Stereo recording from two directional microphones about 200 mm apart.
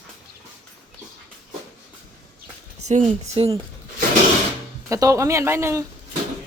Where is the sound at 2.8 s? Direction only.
35° right (ahead or behind).